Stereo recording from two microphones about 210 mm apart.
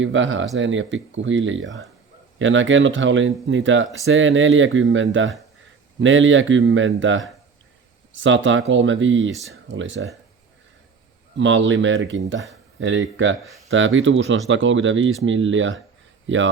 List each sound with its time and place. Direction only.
0.0 s speech: 65° right (ahead or behind)
11.3 s speech: 60° right (ahead or behind)